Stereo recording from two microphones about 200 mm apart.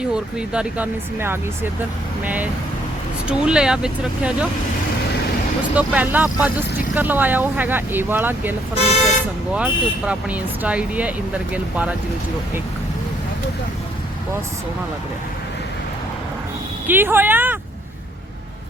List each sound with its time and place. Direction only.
0.1 s speech: 5° right (ahead or behind)
5.7 s speech: 5° right (ahead or behind)
8.7 s speech: 30° left (ahead or behind)
9.6 s speech: 5° right (ahead or behind)
16.8 s speech: 10° right (ahead or behind)